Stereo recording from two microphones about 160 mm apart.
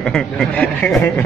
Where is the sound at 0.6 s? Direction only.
15° left (ahead or behind).